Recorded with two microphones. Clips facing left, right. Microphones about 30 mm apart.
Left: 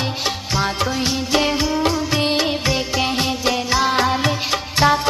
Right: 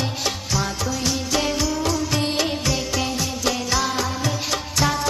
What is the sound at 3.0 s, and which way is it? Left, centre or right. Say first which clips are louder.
Music: left 5 dB; left.